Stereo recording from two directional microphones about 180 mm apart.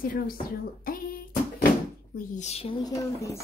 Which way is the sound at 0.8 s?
50° left (ahead or behind).